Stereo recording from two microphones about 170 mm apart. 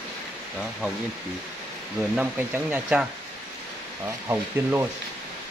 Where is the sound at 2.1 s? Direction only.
10° right (ahead or behind).